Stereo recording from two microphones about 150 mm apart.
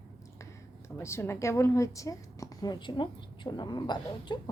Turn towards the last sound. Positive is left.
turn(degrees=30)  # may be behind; listen again after turning